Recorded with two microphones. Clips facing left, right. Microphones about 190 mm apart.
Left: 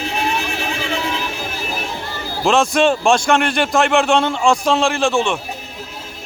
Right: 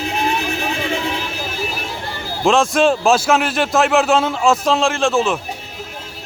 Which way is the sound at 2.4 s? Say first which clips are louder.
Right 1 dB; centre (ahead or behind).